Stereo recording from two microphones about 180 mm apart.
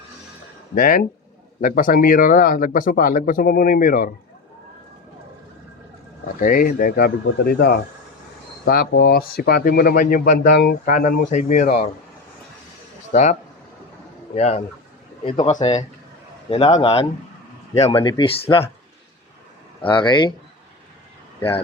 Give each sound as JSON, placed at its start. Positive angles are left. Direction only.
{"t": 0.8, "sound": "speech", "side_deg": 50}
{"t": 6.4, "sound": "speech", "side_deg": 50}
{"t": 13.1, "sound": "speech", "side_deg": 40}
{"t": 14.3, "sound": "speech", "side_deg": 35}
{"t": 18.0, "sound": "speech", "side_deg": 25}
{"t": 19.8, "sound": "speech", "side_deg": 25}